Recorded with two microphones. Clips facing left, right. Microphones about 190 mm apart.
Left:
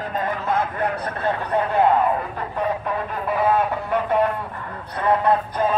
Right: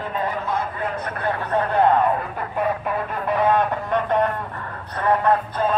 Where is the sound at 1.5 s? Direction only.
5° left (ahead or behind).